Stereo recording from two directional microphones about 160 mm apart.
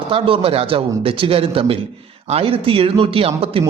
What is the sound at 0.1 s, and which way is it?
Speech, 35° right (ahead or behind).